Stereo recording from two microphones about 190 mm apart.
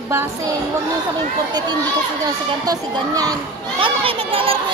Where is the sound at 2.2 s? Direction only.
20° right (ahead or behind).